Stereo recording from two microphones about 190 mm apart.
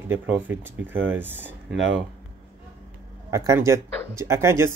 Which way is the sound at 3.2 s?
15° right (ahead or behind).